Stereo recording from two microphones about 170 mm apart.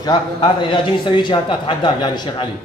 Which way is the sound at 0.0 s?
25° left (ahead or behind).